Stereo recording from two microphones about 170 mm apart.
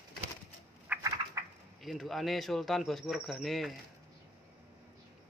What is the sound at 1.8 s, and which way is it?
Speech, centre (ahead or behind).